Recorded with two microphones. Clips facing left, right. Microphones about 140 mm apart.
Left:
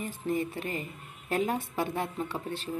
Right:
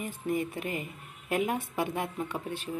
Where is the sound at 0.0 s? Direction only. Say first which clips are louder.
Even; 15° right (ahead or behind).